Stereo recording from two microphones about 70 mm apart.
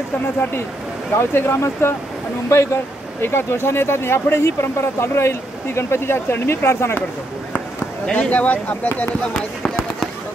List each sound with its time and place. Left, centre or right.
0.4 s speech: left
8.1 s speech: centre